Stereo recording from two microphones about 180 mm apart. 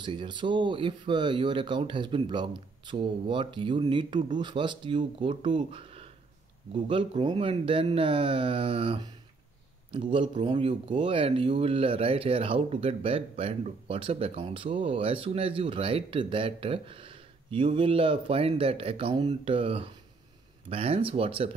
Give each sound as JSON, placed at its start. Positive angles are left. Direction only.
{"t": 0.0, "sound": "speech", "side_deg": -25}